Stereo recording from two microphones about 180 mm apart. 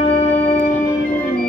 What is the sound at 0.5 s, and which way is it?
Music, 45° left (ahead or behind).